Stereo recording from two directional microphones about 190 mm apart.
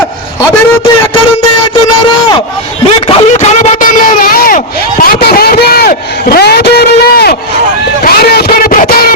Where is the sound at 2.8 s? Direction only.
30° left (ahead or behind).